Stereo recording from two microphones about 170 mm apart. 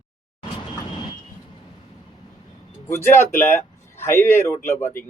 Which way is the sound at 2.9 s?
15° left (ahead or behind).